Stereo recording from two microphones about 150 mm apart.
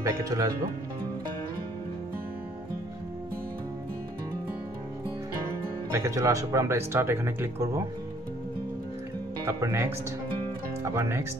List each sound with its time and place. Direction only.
0.0 s speech: 20° right (ahead or behind)
5.9 s speech: 20° right (ahead or behind)
9.4 s speech: 20° right (ahead or behind)